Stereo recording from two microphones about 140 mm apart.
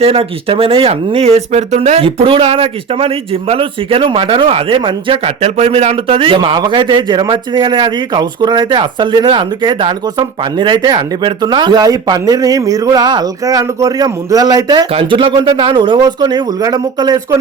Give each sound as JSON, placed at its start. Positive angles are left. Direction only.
{"t": 0.0, "sound": "speech", "side_deg": -45}